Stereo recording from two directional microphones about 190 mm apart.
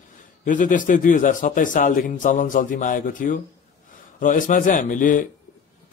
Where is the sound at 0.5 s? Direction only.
45° left (ahead or behind).